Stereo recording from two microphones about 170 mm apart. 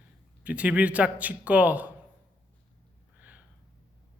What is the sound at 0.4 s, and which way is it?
Speech, 10° right (ahead or behind).